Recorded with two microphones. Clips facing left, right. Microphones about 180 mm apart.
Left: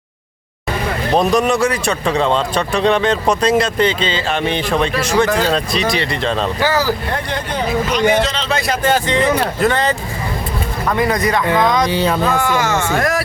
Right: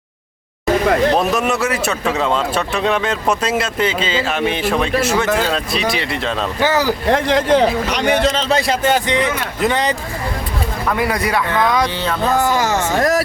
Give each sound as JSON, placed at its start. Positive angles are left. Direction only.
{"t": 1.1, "sound": "a man's voice", "side_deg": -5}
{"t": 6.6, "sound": "speech", "side_deg": -20}
{"t": 7.1, "sound": "speech", "side_deg": -90}
{"t": 8.3, "sound": "speech", "side_deg": -40}
{"t": 9.2, "sound": "a man's voice", "side_deg": 35}
{"t": 9.6, "sound": "speech", "side_deg": -15}
{"t": 10.9, "sound": "speech", "side_deg": -10}
{"t": 11.4, "sound": "a sound", "side_deg": 15}
{"t": 12.3, "sound": "speech", "side_deg": -35}